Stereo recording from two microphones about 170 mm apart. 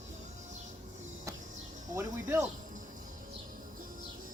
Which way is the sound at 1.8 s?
20° right (ahead or behind).